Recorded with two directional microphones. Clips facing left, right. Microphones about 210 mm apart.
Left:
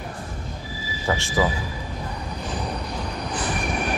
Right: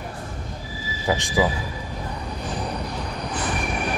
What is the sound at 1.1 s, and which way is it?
Speech, 15° right (ahead or behind).